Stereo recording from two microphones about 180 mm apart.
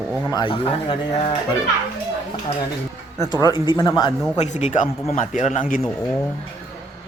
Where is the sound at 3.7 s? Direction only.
20° left (ahead or behind).